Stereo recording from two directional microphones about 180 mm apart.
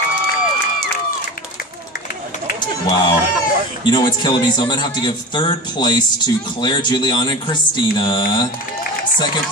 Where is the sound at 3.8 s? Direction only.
25° left (ahead or behind).